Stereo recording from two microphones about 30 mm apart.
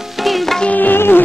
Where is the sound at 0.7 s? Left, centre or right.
Left.